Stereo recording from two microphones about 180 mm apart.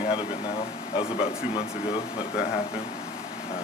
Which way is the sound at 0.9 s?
30° left (ahead or behind).